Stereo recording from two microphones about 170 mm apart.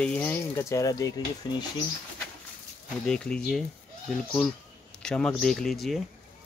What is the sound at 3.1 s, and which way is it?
Speech, 5° left (ahead or behind).